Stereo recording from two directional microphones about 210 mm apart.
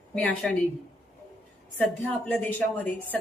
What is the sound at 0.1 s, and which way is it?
Speech, 5° left (ahead or behind).